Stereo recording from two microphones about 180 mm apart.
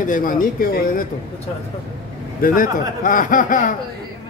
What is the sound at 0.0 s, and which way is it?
Speech, 50° left (ahead or behind).